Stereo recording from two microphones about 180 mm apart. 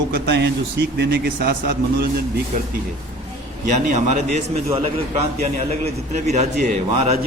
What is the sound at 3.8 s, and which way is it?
A man's voice, 40° right (ahead or behind).